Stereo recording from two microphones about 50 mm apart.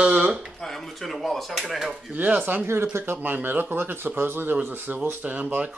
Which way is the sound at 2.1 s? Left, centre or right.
Right.